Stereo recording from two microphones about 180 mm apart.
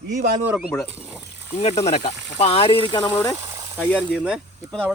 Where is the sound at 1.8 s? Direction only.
35° left (ahead or behind).